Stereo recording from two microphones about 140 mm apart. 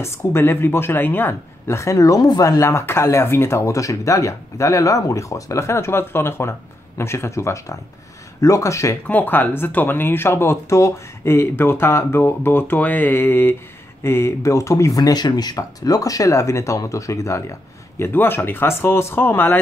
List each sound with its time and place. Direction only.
0.0 s speech: 20° left (ahead or behind)